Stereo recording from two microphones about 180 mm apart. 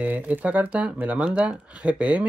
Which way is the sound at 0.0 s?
10° right (ahead or behind).